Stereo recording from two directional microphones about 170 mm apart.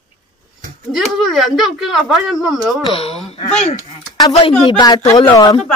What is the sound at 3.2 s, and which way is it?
Speech, 40° left (ahead or behind).